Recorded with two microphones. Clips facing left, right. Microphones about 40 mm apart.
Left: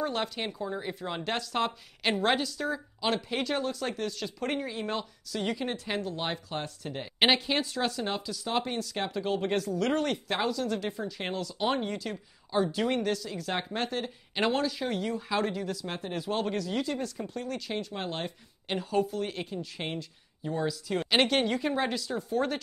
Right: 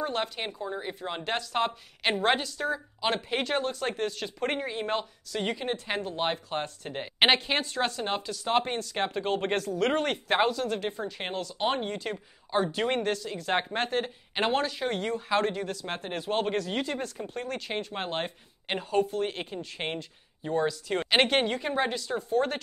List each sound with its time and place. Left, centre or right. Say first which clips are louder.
0.0 s speech: even; centre
3.2 s a woman's voice: right 2 dB; right